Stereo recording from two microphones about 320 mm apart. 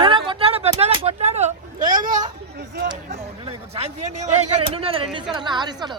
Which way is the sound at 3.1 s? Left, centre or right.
Centre.